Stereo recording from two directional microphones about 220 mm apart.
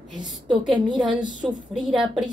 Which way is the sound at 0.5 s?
20° right (ahead or behind).